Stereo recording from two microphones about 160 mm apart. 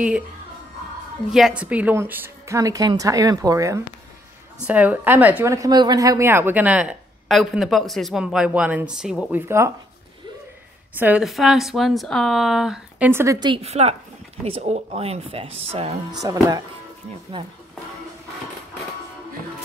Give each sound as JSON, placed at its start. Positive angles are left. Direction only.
{"t": 1.3, "sound": "a woman's voice", "side_deg": -5}
{"t": 4.6, "sound": "a woman's voice", "side_deg": -10}
{"t": 9.3, "sound": "a woman's voice", "side_deg": -15}
{"t": 11.0, "sound": "a woman's voice", "side_deg": -10}
{"t": 13.1, "sound": "a woman's voice", "side_deg": -20}
{"t": 16.1, "sound": "a woman's voice", "side_deg": -20}